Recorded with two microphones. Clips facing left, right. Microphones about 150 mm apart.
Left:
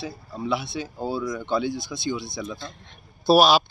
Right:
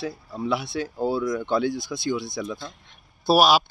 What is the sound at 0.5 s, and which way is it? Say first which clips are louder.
Speech: right 1 dB; 10° right (ahead or behind).